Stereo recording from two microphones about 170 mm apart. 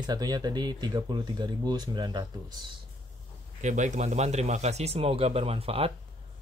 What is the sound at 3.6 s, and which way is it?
Speech, 45° right (ahead or behind).